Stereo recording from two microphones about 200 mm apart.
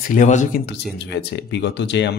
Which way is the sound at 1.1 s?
55° left (ahead or behind).